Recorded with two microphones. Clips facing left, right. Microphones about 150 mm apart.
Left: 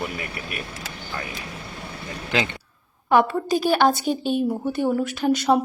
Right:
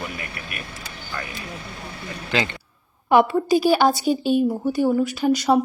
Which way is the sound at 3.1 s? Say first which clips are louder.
Right 3 dB; 10° right (ahead or behind).